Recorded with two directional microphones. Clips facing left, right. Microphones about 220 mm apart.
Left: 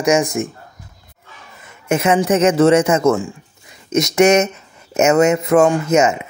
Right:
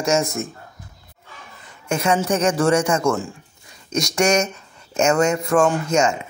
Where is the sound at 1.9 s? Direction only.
20° left (ahead or behind).